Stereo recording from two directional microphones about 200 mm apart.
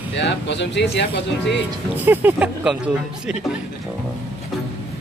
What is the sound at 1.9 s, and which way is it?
Speech, 10° right (ahead or behind).